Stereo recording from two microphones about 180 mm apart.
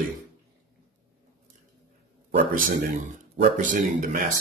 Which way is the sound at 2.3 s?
50° right (ahead or behind).